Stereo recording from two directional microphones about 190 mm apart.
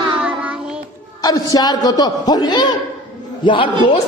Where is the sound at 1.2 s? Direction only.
20° left (ahead or behind).